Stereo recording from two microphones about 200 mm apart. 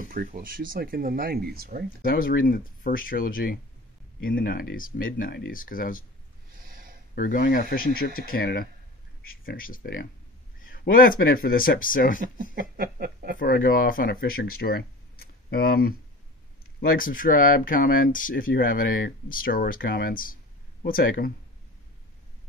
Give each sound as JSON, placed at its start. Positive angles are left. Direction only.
{"t": 0.0, "sound": "speech", "side_deg": -40}
{"t": 2.0, "sound": "speech", "side_deg": 45}
{"t": 6.5, "sound": "a sound", "side_deg": -45}
{"t": 7.2, "sound": "speech", "side_deg": 45}
{"t": 12.2, "sound": "speech", "side_deg": -45}
{"t": 13.4, "sound": "speech", "side_deg": 45}